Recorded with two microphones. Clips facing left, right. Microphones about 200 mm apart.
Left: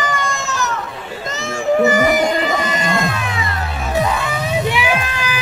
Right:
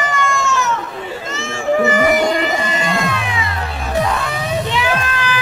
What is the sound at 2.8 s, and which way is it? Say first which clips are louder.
Cat: even; 45° left (ahead or behind).